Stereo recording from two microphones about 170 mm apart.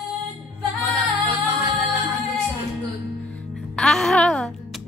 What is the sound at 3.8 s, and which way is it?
Music, centre (ahead or behind).